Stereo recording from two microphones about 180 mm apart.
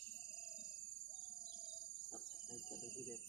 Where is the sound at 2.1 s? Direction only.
5° right (ahead or behind).